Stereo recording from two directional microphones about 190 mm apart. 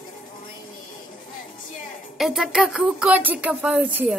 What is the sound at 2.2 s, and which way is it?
Speech, centre (ahead or behind).